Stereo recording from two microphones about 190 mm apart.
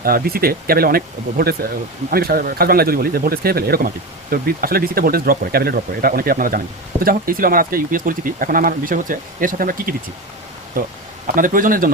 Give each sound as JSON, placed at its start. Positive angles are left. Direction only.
{"t": 0.0, "sound": "speech", "side_deg": -50}